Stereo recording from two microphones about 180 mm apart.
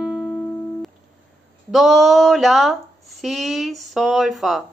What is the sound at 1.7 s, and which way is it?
A woman's voice, centre (ahead or behind).